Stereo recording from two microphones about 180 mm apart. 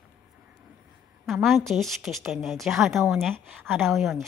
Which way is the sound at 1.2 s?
Centre (ahead or behind).